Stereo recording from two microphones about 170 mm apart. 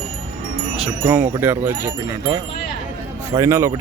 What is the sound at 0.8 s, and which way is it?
Speech, 10° right (ahead or behind).